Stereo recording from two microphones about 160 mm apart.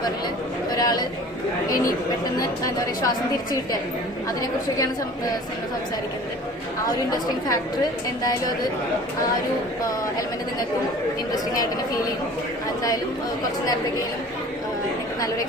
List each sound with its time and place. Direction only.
0.8 s a sound: 25° left (ahead or behind)
2.4 s speech: 20° left (ahead or behind)
7.1 s speech: 25° left (ahead or behind)